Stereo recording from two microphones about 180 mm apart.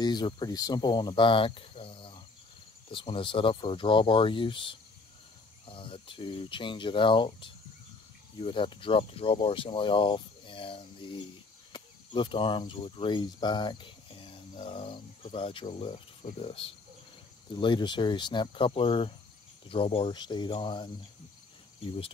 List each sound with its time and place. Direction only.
0.0 s speech: 25° left (ahead or behind)